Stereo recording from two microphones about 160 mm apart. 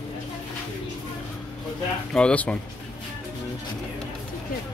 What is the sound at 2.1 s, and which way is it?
Speech, 5° left (ahead or behind).